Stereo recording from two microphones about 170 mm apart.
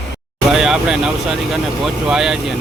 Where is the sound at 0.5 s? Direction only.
5° right (ahead or behind).